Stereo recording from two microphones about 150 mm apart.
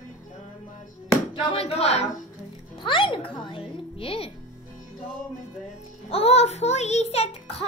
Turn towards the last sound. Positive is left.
turn(degrees=45)  # may be behind; listen again after turning